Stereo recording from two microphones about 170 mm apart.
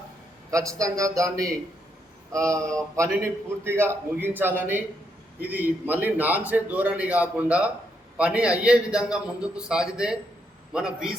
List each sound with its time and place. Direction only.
0.8 s a man's voice: 20° right (ahead or behind); by 11.2 s 5° right (ahead or behind)